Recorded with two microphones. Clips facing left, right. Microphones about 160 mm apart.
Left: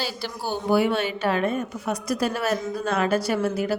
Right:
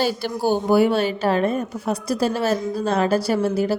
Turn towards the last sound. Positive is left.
turn(degrees=-30)  # may be behind; listen again after turning